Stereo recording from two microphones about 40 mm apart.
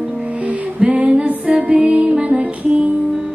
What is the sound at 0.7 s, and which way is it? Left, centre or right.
Music, right.